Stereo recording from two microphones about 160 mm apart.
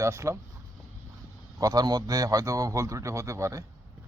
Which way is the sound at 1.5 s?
20° right (ahead or behind).